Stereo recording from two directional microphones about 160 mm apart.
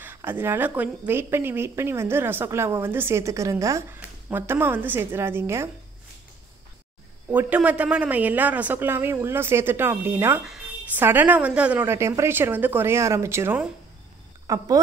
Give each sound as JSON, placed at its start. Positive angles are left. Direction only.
{"t": 0.0, "sound": "speech", "side_deg": -10}
{"t": 7.2, "sound": "speech", "side_deg": -10}
{"t": 10.4, "sound": "speech", "side_deg": -5}